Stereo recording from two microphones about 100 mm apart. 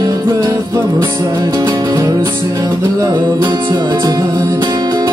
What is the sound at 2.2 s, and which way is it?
Music, 30° right (ahead or behind).